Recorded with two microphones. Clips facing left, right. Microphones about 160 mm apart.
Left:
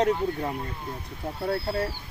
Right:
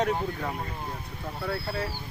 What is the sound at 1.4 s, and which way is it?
Speech, 30° left (ahead or behind).